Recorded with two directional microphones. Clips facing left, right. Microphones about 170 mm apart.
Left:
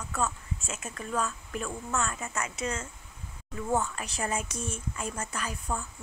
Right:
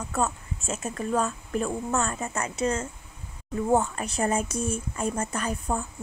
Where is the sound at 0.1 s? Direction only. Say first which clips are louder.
Right 3 dB; 40° right (ahead or behind).